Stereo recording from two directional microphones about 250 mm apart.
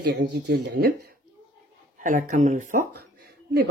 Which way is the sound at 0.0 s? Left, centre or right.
Right.